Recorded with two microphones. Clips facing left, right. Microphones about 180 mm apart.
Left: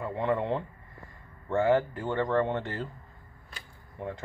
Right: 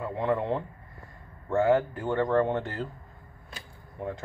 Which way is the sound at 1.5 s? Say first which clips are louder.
Right 1 dB; 20° left (ahead or behind).